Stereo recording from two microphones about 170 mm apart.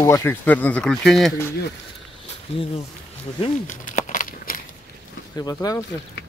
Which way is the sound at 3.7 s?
45° left (ahead or behind).